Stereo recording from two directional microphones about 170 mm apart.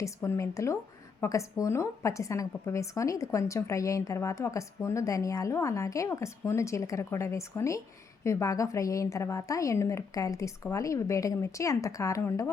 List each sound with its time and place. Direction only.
0.0 s a woman's voice: 15° left (ahead or behind)